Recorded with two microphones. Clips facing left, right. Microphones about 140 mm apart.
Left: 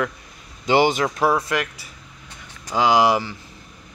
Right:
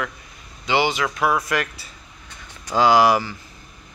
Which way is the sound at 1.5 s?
15° left (ahead or behind).